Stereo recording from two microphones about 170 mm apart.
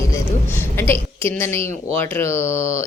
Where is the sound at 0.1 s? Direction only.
15° left (ahead or behind).